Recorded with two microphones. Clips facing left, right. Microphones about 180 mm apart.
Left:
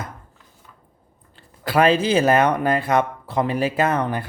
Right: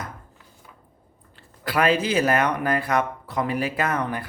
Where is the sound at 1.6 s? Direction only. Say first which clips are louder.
Left 4 dB; 25° left (ahead or behind).